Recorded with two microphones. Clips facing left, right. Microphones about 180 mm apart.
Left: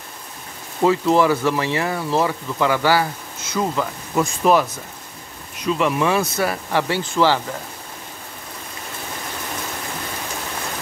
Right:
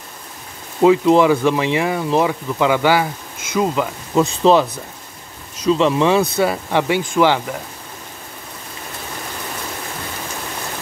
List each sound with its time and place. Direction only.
0.8 s speech: 15° right (ahead or behind)
5.7 s speech: 25° right (ahead or behind)